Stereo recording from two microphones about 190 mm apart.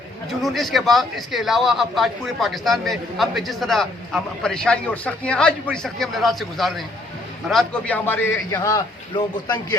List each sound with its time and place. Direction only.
0.3 s a man's voice: centre (ahead or behind); by 9.7 s 20° left (ahead or behind)